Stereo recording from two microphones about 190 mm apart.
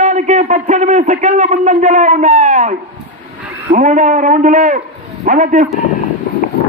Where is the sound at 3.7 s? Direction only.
45° right (ahead or behind).